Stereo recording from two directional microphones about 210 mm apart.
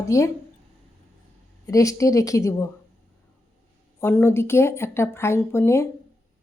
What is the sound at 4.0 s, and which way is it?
Speech, 10° left (ahead or behind).